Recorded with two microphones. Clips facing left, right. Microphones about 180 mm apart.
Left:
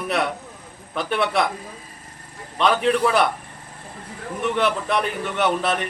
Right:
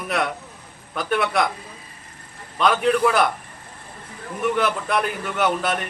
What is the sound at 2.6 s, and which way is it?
Speech, centre (ahead or behind).